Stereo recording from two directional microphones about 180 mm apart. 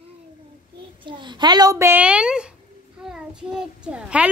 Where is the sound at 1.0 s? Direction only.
25° right (ahead or behind).